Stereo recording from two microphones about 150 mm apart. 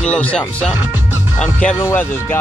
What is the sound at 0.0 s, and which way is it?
Speech, 10° left (ahead or behind).